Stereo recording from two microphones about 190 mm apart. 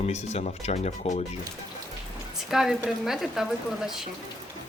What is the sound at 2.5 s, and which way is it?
Speech, centre (ahead or behind).